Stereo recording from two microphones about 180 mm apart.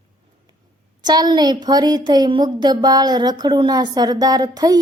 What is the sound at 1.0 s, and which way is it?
Child singing, 20° right (ahead or behind).